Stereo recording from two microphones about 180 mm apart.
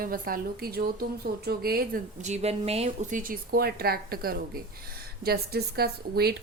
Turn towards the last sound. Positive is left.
turn(degrees=-60)  # may be behind; listen again after turning